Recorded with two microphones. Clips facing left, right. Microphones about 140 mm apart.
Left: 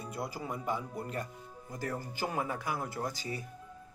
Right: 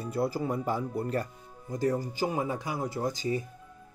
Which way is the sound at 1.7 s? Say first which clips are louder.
Right 9 dB; 20° right (ahead or behind).